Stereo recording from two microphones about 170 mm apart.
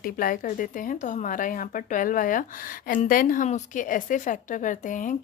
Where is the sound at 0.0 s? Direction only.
55° left (ahead or behind).